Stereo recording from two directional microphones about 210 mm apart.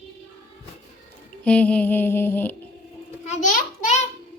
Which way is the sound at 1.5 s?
5° left (ahead or behind).